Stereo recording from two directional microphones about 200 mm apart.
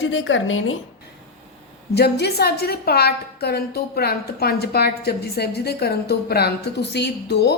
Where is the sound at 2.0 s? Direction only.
55° left (ahead or behind).